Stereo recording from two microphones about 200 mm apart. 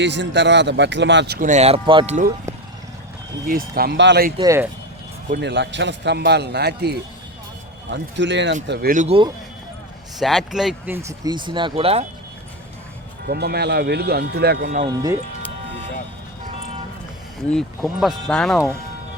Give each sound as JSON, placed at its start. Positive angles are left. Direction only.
{"t": 0.0, "sound": "a man's voice", "side_deg": -65}
{"t": 1.4, "sound": "speech", "side_deg": -35}
{"t": 3.8, "sound": "a man's voice", "side_deg": -55}
{"t": 4.4, "sound": "speech", "side_deg": -15}
{"t": 5.4, "sound": "a man's voice", "side_deg": -60}
{"t": 8.9, "sound": "speech", "side_deg": -40}
{"t": 10.2, "sound": "speech", "side_deg": 0}
{"t": 13.2, "sound": "speech", "side_deg": -50}
{"t": 14.8, "sound": "speech", "side_deg": -15}
{"t": 17.5, "sound": "speech", "side_deg": 5}